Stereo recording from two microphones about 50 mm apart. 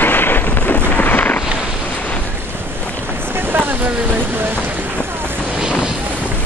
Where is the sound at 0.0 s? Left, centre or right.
Left.